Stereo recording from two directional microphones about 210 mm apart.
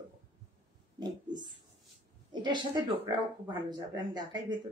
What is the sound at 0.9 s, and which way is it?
A woman's voice, 20° right (ahead or behind).